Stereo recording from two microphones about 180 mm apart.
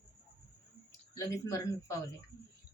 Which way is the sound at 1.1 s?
20° left (ahead or behind).